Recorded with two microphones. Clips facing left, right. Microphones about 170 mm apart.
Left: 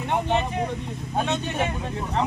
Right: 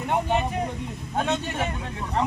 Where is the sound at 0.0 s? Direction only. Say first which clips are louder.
Even; 5° right (ahead or behind).